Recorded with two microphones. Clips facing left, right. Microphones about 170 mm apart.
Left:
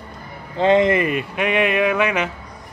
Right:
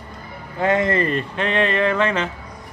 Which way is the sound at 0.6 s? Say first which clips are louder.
Left 4 dB; 20° left (ahead or behind).